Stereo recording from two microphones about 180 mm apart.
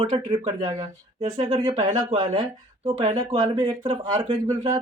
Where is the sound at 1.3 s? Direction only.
20° right (ahead or behind).